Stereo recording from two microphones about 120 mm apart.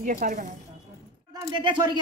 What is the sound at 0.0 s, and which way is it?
Speech, 90° right.